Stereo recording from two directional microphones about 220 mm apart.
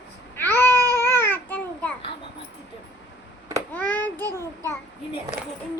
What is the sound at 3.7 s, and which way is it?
Child singing, 5° left (ahead or behind).